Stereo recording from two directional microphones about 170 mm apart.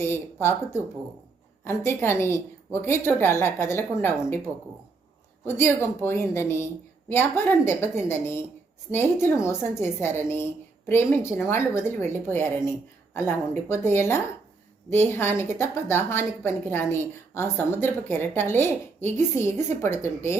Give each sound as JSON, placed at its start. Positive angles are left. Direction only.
{"t": 0.0, "sound": "a woman's voice", "side_deg": 15}
{"t": 5.5, "sound": "a woman's voice", "side_deg": 15}